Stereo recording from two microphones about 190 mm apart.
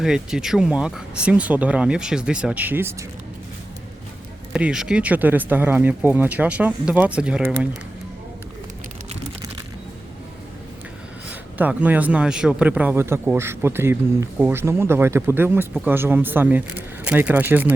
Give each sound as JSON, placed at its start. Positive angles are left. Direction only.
{"t": 0.0, "sound": "speech", "side_deg": -5}
{"t": 4.5, "sound": "speech", "side_deg": -5}
{"t": 11.3, "sound": "speech", "side_deg": -10}